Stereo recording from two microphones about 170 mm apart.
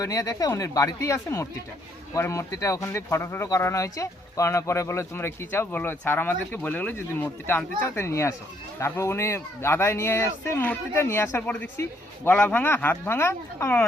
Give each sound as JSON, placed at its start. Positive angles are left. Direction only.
{"t": 0.0, "sound": "speech", "side_deg": 20}